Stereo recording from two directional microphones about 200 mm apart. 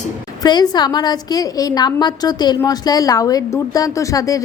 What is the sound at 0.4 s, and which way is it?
A woman's voice, 20° left (ahead or behind).